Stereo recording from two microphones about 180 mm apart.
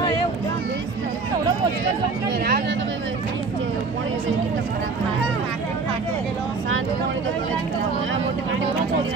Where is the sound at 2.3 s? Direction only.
65° right (ahead or behind).